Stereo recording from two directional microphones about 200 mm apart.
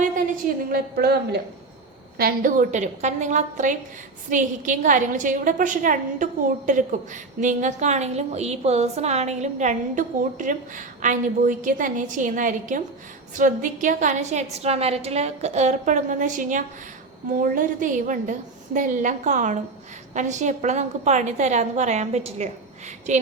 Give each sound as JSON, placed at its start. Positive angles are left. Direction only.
{"t": 0.0, "sound": "a woman's voice", "side_deg": -45}